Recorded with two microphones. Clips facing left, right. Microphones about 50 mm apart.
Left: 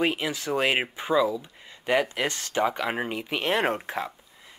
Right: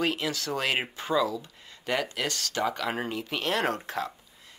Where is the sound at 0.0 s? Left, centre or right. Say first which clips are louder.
Left 2 dB; centre.